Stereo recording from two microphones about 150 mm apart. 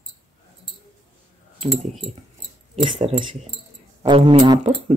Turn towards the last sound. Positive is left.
turn(degrees=-30)  # may be behind; listen again after turning